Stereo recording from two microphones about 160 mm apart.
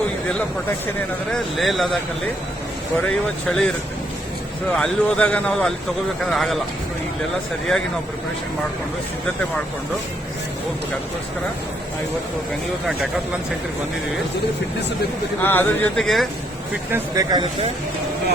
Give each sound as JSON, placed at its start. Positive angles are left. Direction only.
{"t": 1.3, "sound": "speech", "side_deg": 0}
{"t": 3.4, "sound": "speech", "side_deg": 5}
{"t": 4.7, "sound": "speech", "side_deg": 5}
{"t": 15.4, "sound": "speech", "side_deg": 10}
{"t": 16.9, "sound": "speech", "side_deg": -25}